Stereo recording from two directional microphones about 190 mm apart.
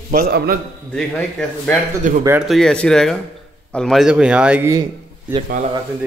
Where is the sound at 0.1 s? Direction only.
50° right (ahead or behind).